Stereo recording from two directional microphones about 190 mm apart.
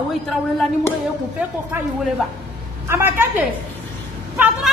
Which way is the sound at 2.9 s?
10° right (ahead or behind).